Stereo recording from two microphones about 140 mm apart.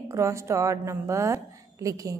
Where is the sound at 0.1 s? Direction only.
20° right (ahead or behind).